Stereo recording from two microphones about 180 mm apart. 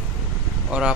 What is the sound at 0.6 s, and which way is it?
Speech, 5° right (ahead or behind).